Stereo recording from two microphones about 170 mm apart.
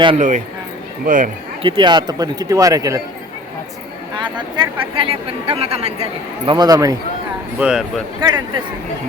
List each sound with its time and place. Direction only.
0.2 s speech: 45° right (ahead or behind)
1.6 s speech: 30° right (ahead or behind)
4.1 s speech: 25° right (ahead or behind)
7.6 s speech: 5° right (ahead or behind)
8.2 s speech: 25° right (ahead or behind)